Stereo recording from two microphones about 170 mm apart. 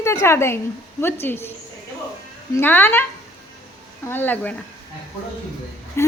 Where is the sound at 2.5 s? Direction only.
10° left (ahead or behind).